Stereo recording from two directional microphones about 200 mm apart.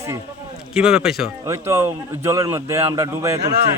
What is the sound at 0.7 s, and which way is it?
Speech, 5° right (ahead or behind).